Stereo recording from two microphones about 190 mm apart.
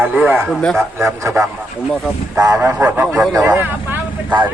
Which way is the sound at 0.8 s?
15° right (ahead or behind).